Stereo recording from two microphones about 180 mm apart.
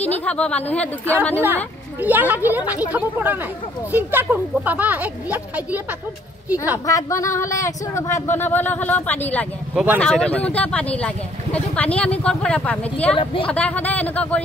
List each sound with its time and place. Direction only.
0.0 s speech: 5° left (ahead or behind)
1.4 s speech: 10° right (ahead or behind)
6.9 s speech: 15° left (ahead or behind)
13.1 s a woman's voice: 30° left (ahead or behind)
13.5 s speech: 5° left (ahead or behind)